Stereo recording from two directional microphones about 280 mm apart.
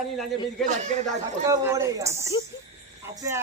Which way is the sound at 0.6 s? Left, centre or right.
Right.